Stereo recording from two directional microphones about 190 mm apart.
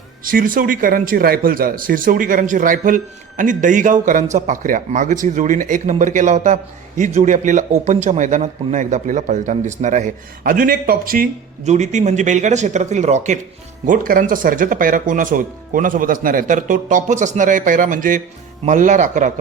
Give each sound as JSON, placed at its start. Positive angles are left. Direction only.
{"t": 0.3, "sound": "speech", "side_deg": -45}